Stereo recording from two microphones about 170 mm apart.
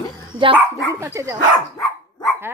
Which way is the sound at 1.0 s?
20° right (ahead or behind).